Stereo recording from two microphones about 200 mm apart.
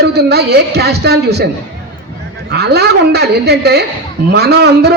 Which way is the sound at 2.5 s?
55° right (ahead or behind).